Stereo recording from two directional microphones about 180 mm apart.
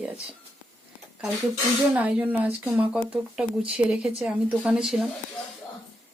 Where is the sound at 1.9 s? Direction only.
10° right (ahead or behind).